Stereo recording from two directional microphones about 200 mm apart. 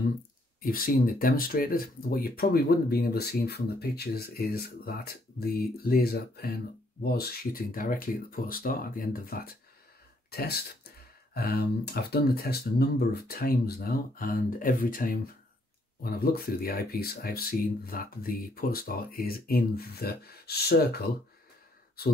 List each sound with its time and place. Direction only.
0.6 s speech: 45° left (ahead or behind)